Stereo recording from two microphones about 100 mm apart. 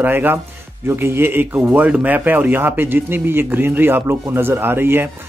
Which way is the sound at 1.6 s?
10° right (ahead or behind).